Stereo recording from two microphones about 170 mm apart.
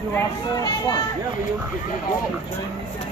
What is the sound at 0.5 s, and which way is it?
Speech, 25° left (ahead or behind).